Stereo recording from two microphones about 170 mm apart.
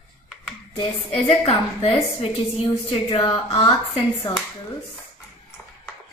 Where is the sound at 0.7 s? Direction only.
30° left (ahead or behind).